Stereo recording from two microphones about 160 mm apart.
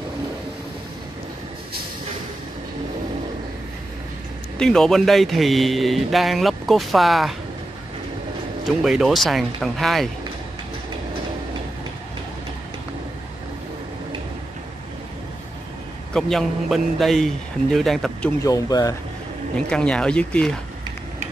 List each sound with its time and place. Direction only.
4.6 s a man's voice: 5° left (ahead or behind)
8.6 s a man's voice: centre (ahead or behind)
16.1 s a man's voice: 5° left (ahead or behind)
18.4 s speech: 25° left (ahead or behind)
19.5 s a man's voice: 5° left (ahead or behind)